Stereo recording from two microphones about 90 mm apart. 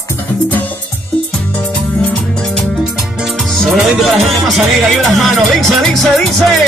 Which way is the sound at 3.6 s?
Centre (ahead or behind).